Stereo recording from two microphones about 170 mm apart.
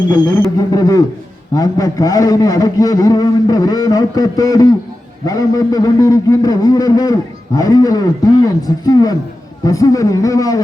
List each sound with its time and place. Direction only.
0.1 s a man's voice: 25° left (ahead or behind)